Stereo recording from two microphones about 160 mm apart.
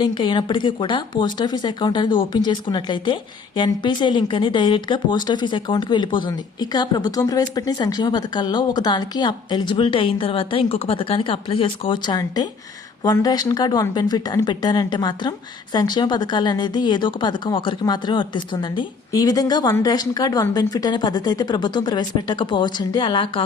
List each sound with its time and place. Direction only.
0.0 s speech: 30° left (ahead or behind)